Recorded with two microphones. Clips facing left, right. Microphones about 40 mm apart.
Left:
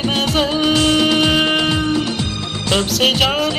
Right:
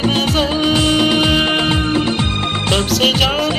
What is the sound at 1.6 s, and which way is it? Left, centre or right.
Music, right.